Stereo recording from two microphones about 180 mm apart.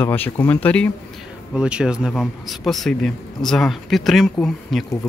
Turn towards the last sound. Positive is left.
turn(degrees=0)  # may be behind; listen again after turning